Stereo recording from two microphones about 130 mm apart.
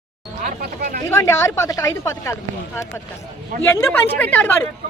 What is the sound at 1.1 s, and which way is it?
A woman's voice, 20° left (ahead or behind).